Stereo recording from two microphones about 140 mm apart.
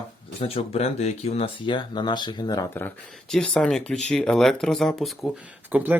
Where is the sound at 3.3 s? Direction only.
5° left (ahead or behind).